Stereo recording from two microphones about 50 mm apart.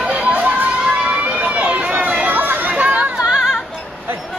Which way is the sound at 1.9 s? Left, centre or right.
Right.